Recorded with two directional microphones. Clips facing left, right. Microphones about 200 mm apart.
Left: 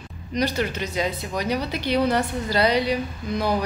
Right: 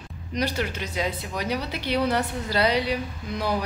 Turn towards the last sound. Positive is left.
turn(degrees=-5)  # may be behind; listen again after turning